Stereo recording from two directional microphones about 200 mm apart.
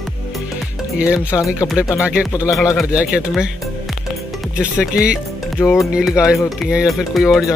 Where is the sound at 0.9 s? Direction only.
5° right (ahead or behind).